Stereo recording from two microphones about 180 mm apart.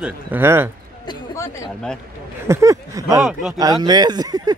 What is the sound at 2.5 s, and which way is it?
Speech, 15° right (ahead or behind).